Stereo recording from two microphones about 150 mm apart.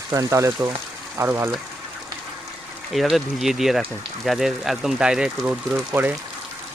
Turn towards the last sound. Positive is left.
turn(degrees=-10)  # may be behind; listen again after turning